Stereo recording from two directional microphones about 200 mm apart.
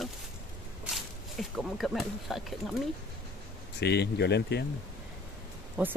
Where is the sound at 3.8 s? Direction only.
55° left (ahead or behind).